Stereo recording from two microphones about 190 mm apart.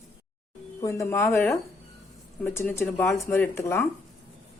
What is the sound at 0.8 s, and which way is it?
A woman's voice, 15° left (ahead or behind).